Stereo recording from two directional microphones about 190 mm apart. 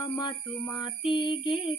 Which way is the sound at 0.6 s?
Centre (ahead or behind).